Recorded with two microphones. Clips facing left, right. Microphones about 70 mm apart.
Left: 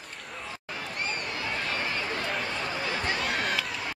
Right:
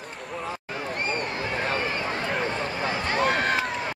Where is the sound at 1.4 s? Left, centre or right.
Right.